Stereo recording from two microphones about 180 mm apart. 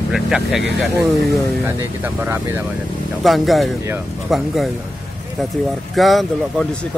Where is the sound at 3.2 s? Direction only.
Centre (ahead or behind).